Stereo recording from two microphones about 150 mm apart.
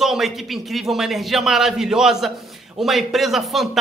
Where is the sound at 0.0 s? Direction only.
Centre (ahead or behind).